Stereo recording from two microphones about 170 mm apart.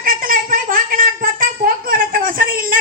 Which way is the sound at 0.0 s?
55° right (ahead or behind).